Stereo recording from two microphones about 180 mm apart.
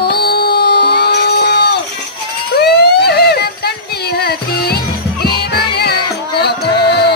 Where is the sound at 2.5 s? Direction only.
65° left (ahead or behind).